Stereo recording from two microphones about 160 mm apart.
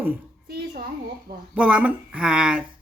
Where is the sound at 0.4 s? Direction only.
70° right (ahead or behind).